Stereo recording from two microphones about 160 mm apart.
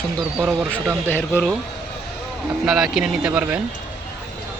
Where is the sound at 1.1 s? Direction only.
15° left (ahead or behind).